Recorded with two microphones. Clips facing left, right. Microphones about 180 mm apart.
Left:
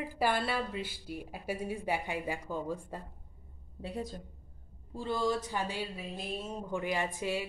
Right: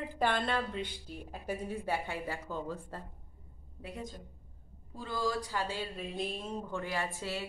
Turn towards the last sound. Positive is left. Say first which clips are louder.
# left 3 dB
turn(degrees=15)  # may be behind; listen again after turning